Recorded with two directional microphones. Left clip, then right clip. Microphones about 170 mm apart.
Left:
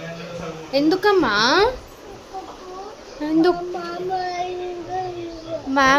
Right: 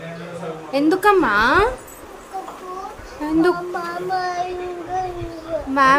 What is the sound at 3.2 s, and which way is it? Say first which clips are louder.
Speech: even; 10° right (ahead or behind).